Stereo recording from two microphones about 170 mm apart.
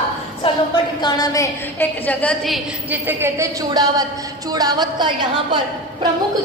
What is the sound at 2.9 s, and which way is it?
A woman's voice, 10° right (ahead or behind).